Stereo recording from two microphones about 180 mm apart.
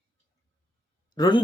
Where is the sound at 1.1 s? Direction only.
25° left (ahead or behind).